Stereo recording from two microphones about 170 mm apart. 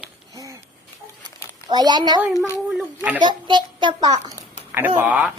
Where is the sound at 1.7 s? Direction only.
25° right (ahead or behind).